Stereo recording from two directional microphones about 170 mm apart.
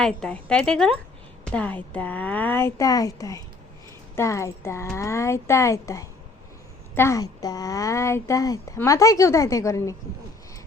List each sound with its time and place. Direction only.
0.0 s a woman's voice: 5° left (ahead or behind)